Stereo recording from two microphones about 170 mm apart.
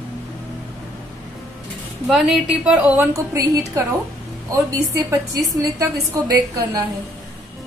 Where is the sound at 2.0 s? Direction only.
Centre (ahead or behind); by 3.6 s 15° right (ahead or behind).